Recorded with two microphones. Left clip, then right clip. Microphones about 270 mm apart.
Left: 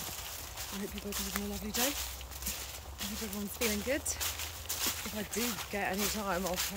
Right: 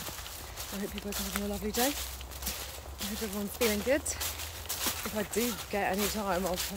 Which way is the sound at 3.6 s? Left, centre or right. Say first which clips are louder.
Right 5 dB; centre.